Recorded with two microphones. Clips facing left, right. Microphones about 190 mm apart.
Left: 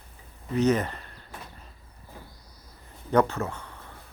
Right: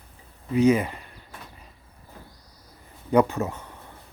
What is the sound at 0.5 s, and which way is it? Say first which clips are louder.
Speech: right 4 dB; 10° right (ahead or behind).